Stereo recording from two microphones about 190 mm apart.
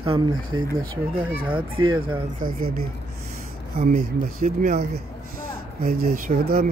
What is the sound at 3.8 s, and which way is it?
Speech, 50° right (ahead or behind).